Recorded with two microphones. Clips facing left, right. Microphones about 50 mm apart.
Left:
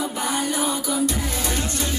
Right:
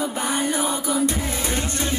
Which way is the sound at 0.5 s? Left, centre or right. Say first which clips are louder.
Right 1 dB; right.